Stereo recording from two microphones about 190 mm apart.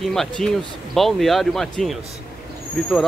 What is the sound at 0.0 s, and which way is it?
Speech, centre (ahead or behind).